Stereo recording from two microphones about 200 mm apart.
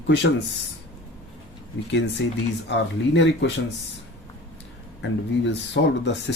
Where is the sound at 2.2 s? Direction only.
60° left (ahead or behind).